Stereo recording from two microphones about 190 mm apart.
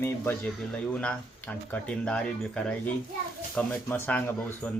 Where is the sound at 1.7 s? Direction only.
5° left (ahead or behind).